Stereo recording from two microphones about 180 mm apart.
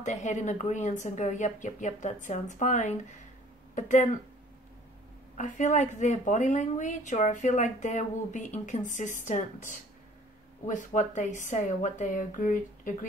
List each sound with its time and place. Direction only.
0.0 s a woman's voice: 40° left (ahead or behind)
5.4 s a woman's voice: 40° left (ahead or behind)